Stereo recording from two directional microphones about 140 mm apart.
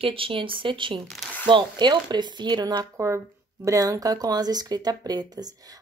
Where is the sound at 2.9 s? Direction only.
20° right (ahead or behind).